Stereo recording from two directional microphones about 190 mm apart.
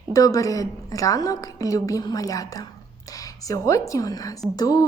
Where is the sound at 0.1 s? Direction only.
20° left (ahead or behind).